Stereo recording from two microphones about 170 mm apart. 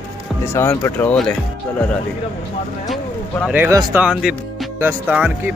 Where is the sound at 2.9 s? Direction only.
Centre (ahead or behind).